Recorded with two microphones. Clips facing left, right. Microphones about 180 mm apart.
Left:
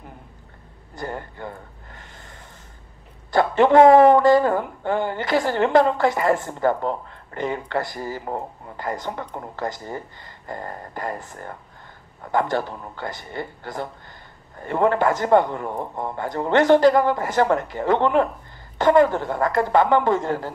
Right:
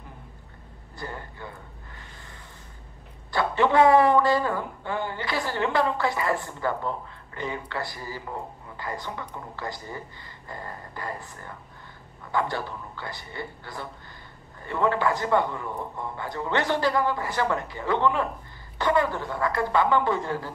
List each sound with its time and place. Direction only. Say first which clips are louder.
0.9 s a man's voice: left 6 dB; 45° left (ahead or behind)
3.3 s a man's voice: left 6 dB; 45° left (ahead or behind)